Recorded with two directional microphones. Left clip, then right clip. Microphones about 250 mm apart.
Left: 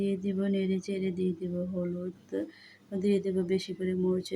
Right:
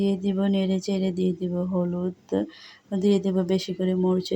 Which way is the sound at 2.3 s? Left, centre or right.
Centre.